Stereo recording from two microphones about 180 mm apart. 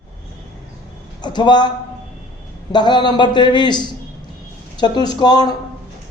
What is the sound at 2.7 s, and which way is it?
A man's voice, 25° left (ahead or behind).